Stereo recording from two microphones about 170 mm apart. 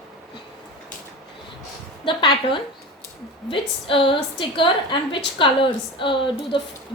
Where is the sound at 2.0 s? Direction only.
30° left (ahead or behind).